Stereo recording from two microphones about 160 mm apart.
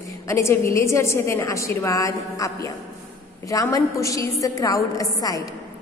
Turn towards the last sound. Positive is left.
turn(degrees=20)  # may be behind; listen again after turning